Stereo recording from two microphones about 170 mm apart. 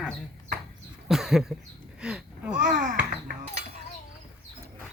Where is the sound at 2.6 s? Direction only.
50° right (ahead or behind).